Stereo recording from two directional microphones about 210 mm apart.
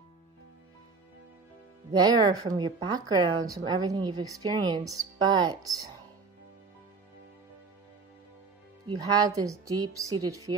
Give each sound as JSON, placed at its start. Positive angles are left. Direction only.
{"t": 1.9, "sound": "speech", "side_deg": -20}
{"t": 8.8, "sound": "a woman's voice", "side_deg": -20}